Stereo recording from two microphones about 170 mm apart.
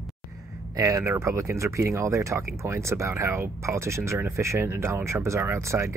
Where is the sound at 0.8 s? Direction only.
15° right (ahead or behind).